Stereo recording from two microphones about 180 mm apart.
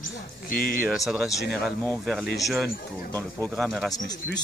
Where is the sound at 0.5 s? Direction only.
55° left (ahead or behind).